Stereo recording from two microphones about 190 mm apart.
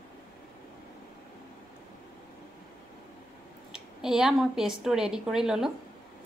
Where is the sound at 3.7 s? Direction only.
5° right (ahead or behind).